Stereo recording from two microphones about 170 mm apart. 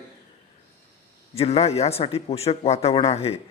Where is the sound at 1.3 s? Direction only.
35° left (ahead or behind).